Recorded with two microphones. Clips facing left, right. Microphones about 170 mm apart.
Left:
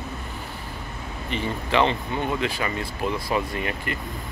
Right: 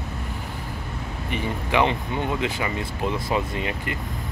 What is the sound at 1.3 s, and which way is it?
Speech, 15° right (ahead or behind).